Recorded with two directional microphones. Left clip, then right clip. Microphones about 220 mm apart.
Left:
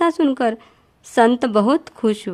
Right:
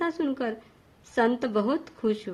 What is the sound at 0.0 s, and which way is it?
Speech, 50° left (ahead or behind).